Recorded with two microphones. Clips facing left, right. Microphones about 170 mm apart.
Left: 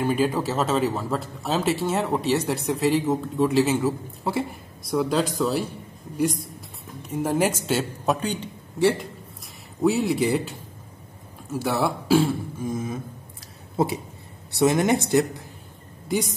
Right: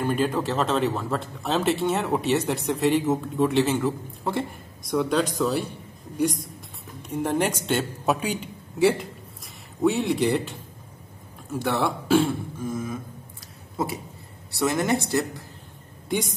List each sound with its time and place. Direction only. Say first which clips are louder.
0.0 s speech: left 1 dB; 5° left (ahead or behind)
11.5 s speech: left 1 dB; 5° left (ahead or behind)
12.6 s speech: left 1 dB; 20° left (ahead or behind)